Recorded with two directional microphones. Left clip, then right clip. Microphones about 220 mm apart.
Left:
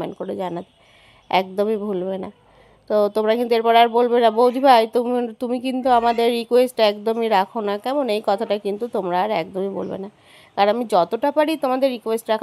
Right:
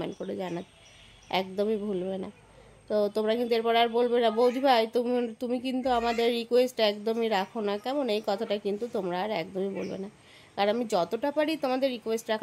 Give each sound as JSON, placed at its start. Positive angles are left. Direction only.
{"t": 0.0, "sound": "speech", "side_deg": 15}